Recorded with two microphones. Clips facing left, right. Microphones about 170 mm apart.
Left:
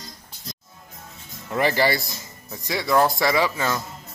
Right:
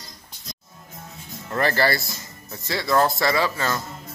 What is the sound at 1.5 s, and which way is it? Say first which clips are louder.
Speech: left 1 dB; 10° left (ahead or behind).